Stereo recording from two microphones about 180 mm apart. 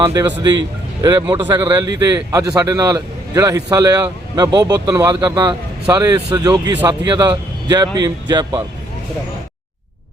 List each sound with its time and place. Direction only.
0.0 s a man's voice: 20° right (ahead or behind)